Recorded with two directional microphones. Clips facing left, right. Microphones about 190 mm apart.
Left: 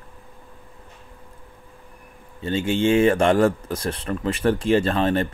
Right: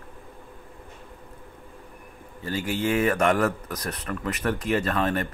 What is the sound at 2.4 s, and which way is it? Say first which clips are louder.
Speech: left 6 dB; 25° left (ahead or behind).